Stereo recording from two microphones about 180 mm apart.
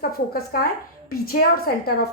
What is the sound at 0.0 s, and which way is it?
A woman's voice, 60° left (ahead or behind).